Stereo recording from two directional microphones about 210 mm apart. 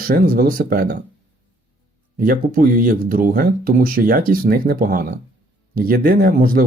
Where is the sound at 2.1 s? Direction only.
45° right (ahead or behind).